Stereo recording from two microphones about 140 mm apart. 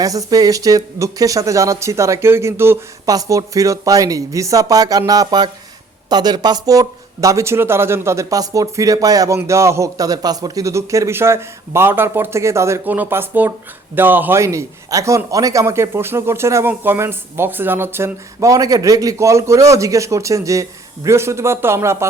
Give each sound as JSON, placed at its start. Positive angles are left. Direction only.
{"t": 0.0, "sound": "a man's voice", "side_deg": -25}